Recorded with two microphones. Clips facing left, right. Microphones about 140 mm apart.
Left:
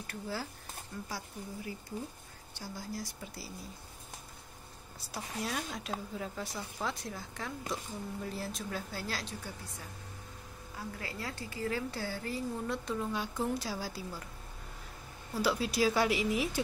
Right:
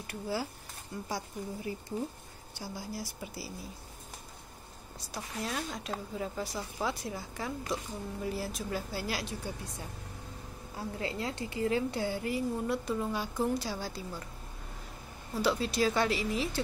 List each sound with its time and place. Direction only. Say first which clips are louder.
0.0 s a woman's voice: right 4 dB; 10° right (ahead or behind)
2.6 s a woman's voice: right 1 dB; 10° right (ahead or behind)
5.1 s speech: right 1 dB; centre (ahead or behind)
10.8 s a woman's voice: right 6 dB; 25° right (ahead or behind); by 14.2 s 5° left (ahead or behind)
15.3 s speech: right 1 dB; 5° left (ahead or behind)